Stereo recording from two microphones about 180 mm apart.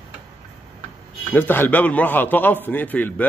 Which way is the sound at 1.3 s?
10° left (ahead or behind).